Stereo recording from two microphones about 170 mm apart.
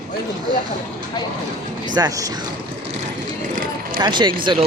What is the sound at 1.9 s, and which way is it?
Speech, 20° right (ahead or behind).